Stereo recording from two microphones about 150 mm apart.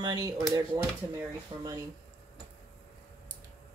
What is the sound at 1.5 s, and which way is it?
Speech, 35° right (ahead or behind).